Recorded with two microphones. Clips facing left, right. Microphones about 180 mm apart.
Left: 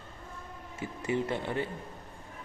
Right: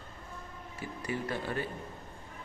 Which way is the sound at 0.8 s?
25° left (ahead or behind).